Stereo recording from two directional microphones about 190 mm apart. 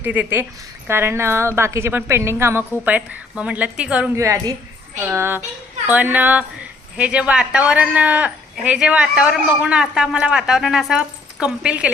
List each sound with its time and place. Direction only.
0.0 s a woman's voice: 10° right (ahead or behind)
4.2 s a woman's voice: 15° right (ahead or behind)